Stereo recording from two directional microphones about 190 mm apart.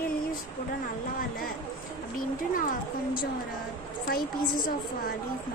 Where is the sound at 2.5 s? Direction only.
45° left (ahead or behind).